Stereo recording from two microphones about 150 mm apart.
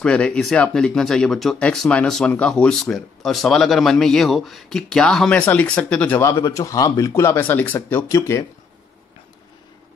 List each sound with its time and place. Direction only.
0.0 s speech: 5° left (ahead or behind)